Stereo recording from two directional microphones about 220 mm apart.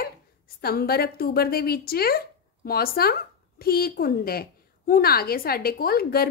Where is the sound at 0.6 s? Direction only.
45° left (ahead or behind).